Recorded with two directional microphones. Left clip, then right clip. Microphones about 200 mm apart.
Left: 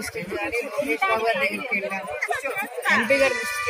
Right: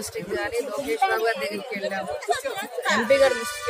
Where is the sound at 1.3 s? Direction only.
50° right (ahead or behind).